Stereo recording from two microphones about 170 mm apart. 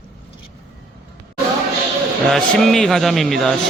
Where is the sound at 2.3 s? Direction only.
Centre (ahead or behind).